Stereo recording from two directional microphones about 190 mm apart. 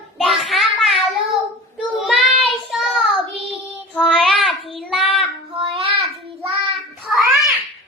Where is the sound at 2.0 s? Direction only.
Centre (ahead or behind).